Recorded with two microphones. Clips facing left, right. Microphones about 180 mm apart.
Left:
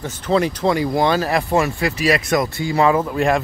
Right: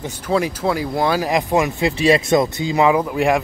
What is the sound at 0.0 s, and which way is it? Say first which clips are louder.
Speech: left 1 dB; 10° right (ahead or behind).